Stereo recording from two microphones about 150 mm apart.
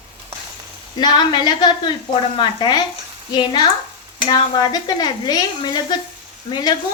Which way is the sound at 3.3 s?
30° left (ahead or behind).